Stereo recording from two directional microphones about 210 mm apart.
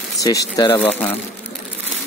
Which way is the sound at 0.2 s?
15° left (ahead or behind).